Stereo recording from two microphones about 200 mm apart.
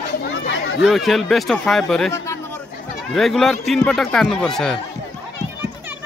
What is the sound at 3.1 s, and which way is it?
Speech, centre (ahead or behind).